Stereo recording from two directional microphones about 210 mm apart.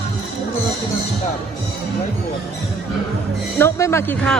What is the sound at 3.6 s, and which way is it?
Speech, 10° left (ahead or behind).